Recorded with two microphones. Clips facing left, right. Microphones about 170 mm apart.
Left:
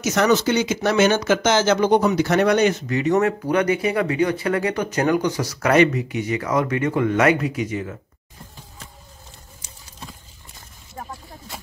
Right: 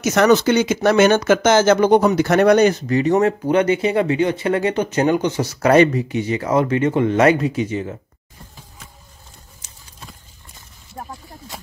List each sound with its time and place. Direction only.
0.0 s speech: 60° right (ahead or behind); by 8.0 s 30° right (ahead or behind)